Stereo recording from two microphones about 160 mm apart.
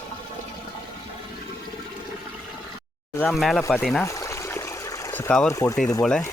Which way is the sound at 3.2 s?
Centre (ahead or behind).